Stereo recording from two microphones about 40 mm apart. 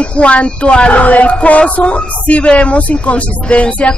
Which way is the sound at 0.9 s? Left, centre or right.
Left.